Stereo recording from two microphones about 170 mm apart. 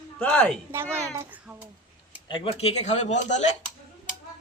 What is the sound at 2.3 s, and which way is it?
Speech, 30° left (ahead or behind).